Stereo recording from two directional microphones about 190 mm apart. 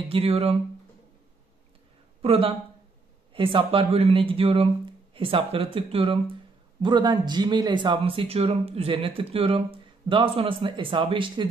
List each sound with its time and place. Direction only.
0.1 s speech: 30° right (ahead or behind)
2.2 s speech: 30° right (ahead or behind)